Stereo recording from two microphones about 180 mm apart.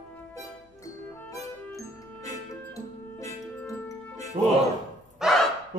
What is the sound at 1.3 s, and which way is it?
Music, 20° left (ahead or behind).